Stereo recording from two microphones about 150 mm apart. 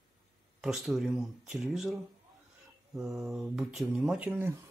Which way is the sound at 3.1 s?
5° right (ahead or behind).